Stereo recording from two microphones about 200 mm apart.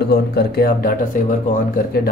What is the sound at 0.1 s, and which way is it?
Speech, 55° left (ahead or behind).